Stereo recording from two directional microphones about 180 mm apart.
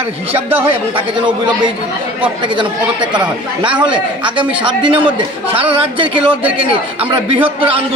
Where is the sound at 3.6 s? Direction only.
25° right (ahead or behind).